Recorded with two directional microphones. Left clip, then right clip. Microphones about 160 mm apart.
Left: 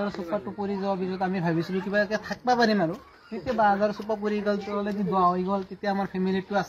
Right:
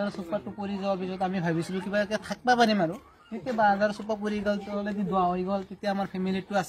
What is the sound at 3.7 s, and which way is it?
A man's voice, 25° right (ahead or behind).